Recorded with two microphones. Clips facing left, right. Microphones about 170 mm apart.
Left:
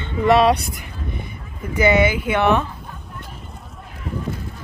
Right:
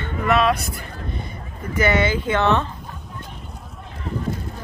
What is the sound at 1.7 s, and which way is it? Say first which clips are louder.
Speech: left 3 dB; 15° left (ahead or behind).